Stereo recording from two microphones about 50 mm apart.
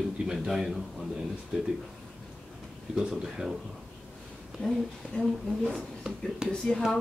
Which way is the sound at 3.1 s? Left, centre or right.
Centre.